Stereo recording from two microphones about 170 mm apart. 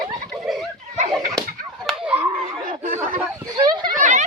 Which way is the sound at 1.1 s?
Centre (ahead or behind).